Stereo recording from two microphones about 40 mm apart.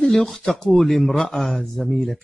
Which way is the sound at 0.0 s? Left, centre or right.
Centre.